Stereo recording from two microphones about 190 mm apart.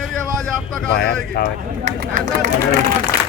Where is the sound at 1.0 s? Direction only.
55° left (ahead or behind).